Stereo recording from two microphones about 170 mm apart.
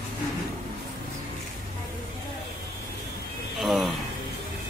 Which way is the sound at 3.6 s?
Centre (ahead or behind).